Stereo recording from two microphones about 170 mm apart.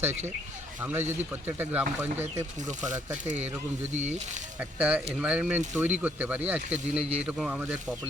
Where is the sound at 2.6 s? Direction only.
45° right (ahead or behind).